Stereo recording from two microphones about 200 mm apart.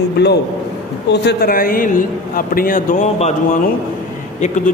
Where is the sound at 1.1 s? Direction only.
55° left (ahead or behind).